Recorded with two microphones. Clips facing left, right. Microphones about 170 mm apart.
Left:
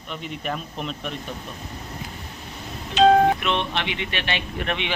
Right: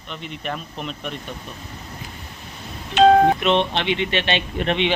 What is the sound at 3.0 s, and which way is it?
Doorbell, 60° right (ahead or behind).